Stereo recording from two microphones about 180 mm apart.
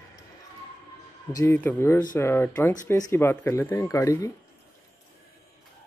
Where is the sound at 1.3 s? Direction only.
10° left (ahead or behind).